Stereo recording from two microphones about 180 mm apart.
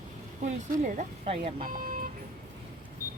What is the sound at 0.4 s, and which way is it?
Speech, 40° right (ahead or behind).